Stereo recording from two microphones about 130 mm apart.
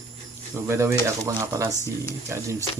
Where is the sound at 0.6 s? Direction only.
20° right (ahead or behind).